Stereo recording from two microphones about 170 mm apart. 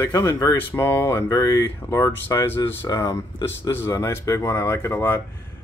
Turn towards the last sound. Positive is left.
turn(degrees=15)  # may be behind; listen again after turning